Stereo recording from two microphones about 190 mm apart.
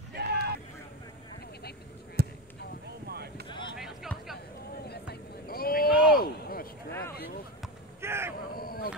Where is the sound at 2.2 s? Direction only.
55° right (ahead or behind).